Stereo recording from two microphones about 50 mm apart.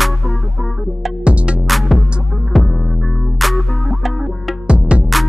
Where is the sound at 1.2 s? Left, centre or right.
Right.